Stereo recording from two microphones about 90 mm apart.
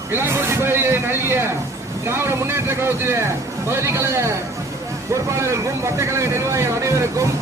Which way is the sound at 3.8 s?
30° right (ahead or behind).